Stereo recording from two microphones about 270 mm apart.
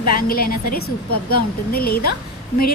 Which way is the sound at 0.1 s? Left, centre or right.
Left.